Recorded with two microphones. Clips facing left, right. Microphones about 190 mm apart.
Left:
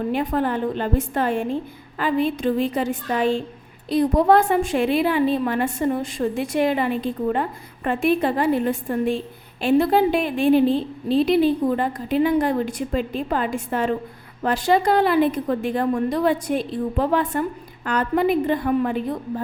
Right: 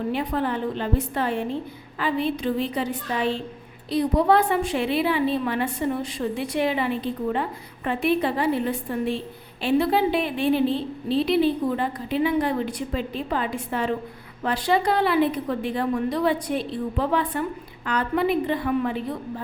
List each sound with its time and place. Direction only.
0.1 s a woman's voice: 50° left (ahead or behind)